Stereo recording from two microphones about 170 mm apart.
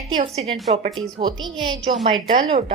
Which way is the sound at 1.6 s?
25° right (ahead or behind).